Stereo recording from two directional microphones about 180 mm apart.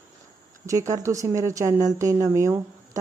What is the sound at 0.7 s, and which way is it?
A woman's voice, 15° right (ahead or behind).